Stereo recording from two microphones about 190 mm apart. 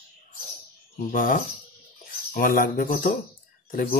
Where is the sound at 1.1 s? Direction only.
45° left (ahead or behind).